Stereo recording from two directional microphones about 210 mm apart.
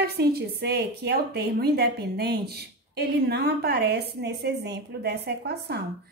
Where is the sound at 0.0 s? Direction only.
50° right (ahead or behind).